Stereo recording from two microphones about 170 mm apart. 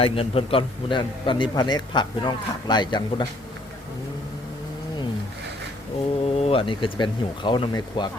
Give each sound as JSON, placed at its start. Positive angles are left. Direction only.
{"t": 0.0, "sound": "a man's voice", "side_deg": 35}
{"t": 6.2, "sound": "speech", "side_deg": 35}